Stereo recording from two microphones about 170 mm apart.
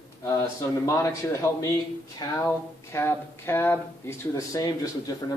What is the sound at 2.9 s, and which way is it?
Speech, 15° left (ahead or behind).